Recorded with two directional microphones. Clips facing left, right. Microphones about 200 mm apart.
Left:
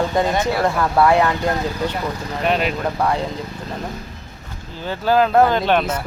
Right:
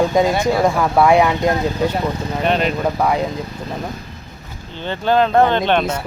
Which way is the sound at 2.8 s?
10° right (ahead or behind).